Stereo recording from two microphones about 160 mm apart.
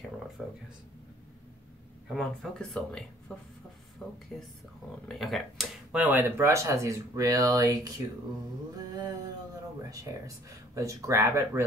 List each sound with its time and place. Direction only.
2.0 s speech: centre (ahead or behind)
5.0 s speech: centre (ahead or behind)
5.9 s speech: 10° right (ahead or behind)
8.9 s a sound: 25° right (ahead or behind)
9.8 s speech: 20° right (ahead or behind)